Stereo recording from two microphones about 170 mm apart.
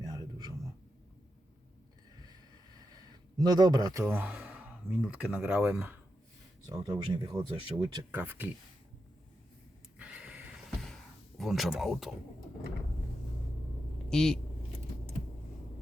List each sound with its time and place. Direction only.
0.0 s a sound: 25° right (ahead or behind)
2.9 s speech: 25° right (ahead or behind)
6.7 s speech: 25° right (ahead or behind)
8.1 s speech: 10° right (ahead or behind)
10.0 s a sound: 5° right (ahead or behind)
11.3 s speech: centre (ahead or behind)
14.1 s speech: 5° left (ahead or behind)